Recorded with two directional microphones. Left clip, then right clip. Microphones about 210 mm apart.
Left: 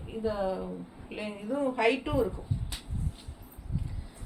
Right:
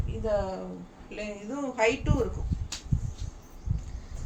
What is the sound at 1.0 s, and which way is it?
Speech, 15° right (ahead or behind).